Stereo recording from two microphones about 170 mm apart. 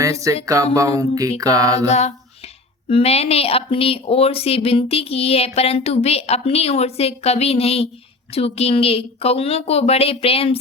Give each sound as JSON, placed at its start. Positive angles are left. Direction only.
{"t": 0.0, "sound": "music", "side_deg": -20}
{"t": 0.4, "sound": "mantra", "side_deg": -20}
{"t": 1.9, "sound": "speech", "side_deg": 40}